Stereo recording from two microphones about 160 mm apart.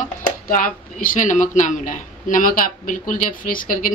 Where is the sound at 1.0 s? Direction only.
55° left (ahead or behind).